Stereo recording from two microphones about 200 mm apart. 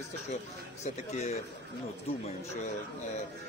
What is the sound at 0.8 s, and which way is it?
Speech, 35° left (ahead or behind).